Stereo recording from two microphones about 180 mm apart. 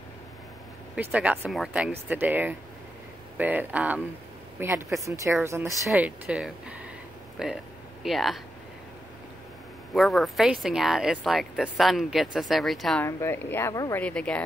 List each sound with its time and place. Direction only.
0.9 s speech: 10° right (ahead or behind)
9.9 s speech: centre (ahead or behind)
13.0 s speech: 15° left (ahead or behind)